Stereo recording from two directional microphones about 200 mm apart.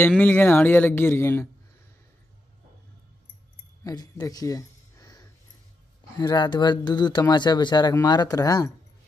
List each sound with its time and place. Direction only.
0.2 s speech: 10° left (ahead or behind)
3.8 s a sound: 20° left (ahead or behind)
6.1 s speech: 20° left (ahead or behind)